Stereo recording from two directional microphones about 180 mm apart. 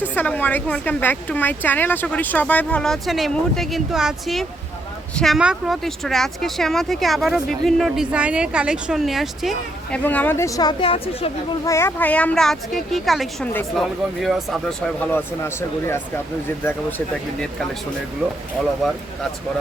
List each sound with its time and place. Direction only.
0.1 s speech: 10° left (ahead or behind)
10.0 s speech: 10° left (ahead or behind); by 11.3 s 30° left (ahead or behind)
11.6 s speech: 15° left (ahead or behind)